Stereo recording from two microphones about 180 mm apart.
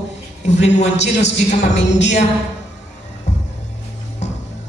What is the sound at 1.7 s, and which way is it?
Speech, 75° left (ahead or behind).